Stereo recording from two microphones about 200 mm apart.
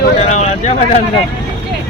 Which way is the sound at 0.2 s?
35° left (ahead or behind).